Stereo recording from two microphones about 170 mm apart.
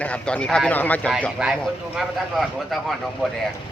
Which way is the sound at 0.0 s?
5° left (ahead or behind).